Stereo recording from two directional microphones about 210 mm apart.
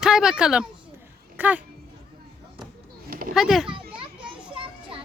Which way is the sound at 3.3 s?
Centre (ahead or behind).